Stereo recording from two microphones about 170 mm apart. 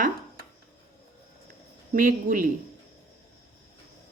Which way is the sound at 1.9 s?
50° right (ahead or behind).